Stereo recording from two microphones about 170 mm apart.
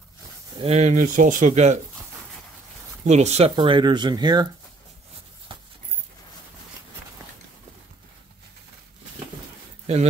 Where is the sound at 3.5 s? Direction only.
25° right (ahead or behind).